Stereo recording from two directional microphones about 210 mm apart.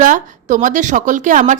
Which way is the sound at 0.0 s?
40° right (ahead or behind).